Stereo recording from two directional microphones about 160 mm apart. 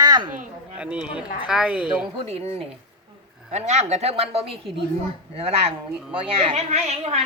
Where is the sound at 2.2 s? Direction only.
40° right (ahead or behind).